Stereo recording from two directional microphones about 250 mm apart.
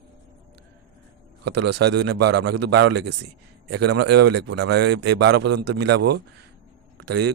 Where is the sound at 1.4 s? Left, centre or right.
Right.